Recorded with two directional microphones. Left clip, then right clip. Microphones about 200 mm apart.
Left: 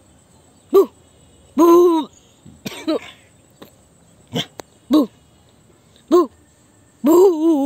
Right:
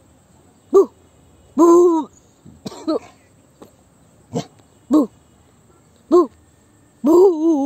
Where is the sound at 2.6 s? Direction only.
15° left (ahead or behind).